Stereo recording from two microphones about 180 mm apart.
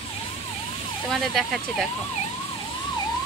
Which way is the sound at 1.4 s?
Centre (ahead or behind).